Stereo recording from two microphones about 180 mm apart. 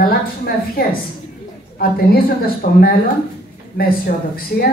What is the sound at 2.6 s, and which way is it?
Speech, 45° left (ahead or behind).